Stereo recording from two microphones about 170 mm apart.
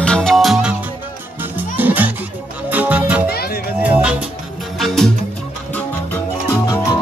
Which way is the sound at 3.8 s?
5° right (ahead or behind).